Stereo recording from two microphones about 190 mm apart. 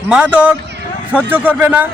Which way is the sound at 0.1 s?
5° right (ahead or behind).